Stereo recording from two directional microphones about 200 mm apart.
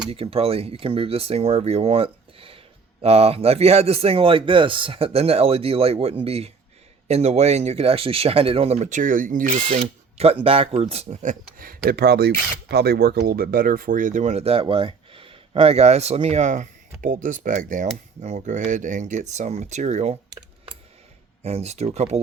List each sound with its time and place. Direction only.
0.1 s speech: 30° right (ahead or behind)
9.6 s speech: 30° right (ahead or behind)
21.4 s speech: 30° right (ahead or behind)